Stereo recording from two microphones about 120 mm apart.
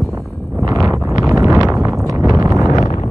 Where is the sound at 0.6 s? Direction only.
25° right (ahead or behind).